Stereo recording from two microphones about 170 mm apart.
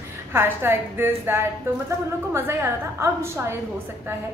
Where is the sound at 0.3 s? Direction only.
15° right (ahead or behind).